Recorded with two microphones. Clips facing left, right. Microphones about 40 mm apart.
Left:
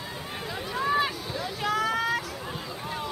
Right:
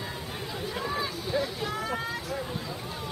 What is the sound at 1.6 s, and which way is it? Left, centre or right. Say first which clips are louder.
Vehicle: left 5 dB; left.